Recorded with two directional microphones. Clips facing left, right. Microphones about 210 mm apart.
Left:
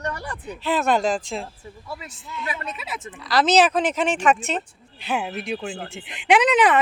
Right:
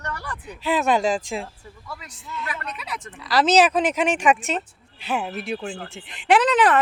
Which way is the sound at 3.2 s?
10° right (ahead or behind).